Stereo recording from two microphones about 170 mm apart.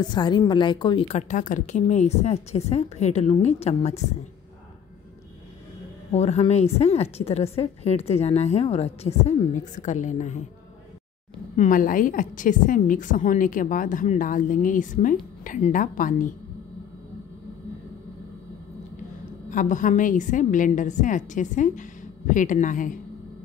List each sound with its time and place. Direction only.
0.0 s a woman's voice: 25° left (ahead or behind)
6.1 s a woman's voice: 40° left (ahead or behind)
11.5 s a woman's voice: 50° left (ahead or behind)
19.5 s a woman's voice: 50° left (ahead or behind)